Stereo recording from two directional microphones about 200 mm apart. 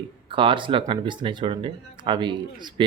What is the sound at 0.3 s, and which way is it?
Speech, 25° right (ahead or behind).